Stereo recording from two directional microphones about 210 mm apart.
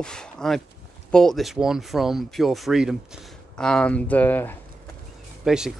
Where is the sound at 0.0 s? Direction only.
5° left (ahead or behind).